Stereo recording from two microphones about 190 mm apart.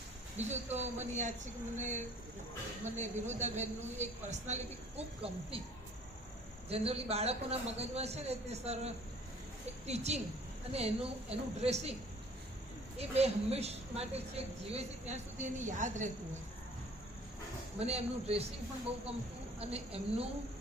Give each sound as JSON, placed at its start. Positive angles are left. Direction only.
{"t": 0.3, "sound": "speech", "side_deg": -35}
{"t": 6.7, "sound": "speech", "side_deg": -30}
{"t": 13.0, "sound": "speech", "side_deg": -35}
{"t": 17.7, "sound": "speech", "side_deg": -30}
{"t": 19.5, "sound": "speech", "side_deg": -30}